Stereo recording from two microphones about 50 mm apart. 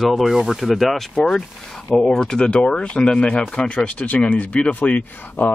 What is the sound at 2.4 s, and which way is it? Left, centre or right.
Speech, left.